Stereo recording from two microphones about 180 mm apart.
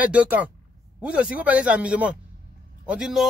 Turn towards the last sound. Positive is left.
turn(degrees=-5)  # may be behind; listen again after turning